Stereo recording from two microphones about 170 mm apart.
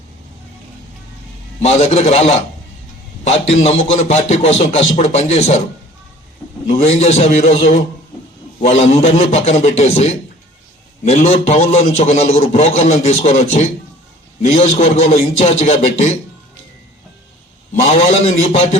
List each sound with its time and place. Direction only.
1.6 s a man's voice: 40° left (ahead or behind)
6.8 s a man's voice: 40° left (ahead or behind)
8.9 s a man's voice: 40° left (ahead or behind)
17.8 s a man's voice: 40° left (ahead or behind)